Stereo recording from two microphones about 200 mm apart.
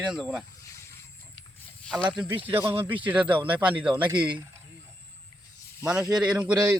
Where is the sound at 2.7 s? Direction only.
25° right (ahead or behind).